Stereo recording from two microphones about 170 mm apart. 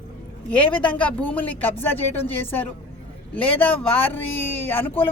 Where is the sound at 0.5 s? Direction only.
5° left (ahead or behind).